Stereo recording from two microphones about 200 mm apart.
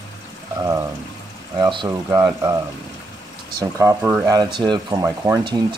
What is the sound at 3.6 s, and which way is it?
Speech, 15° right (ahead or behind).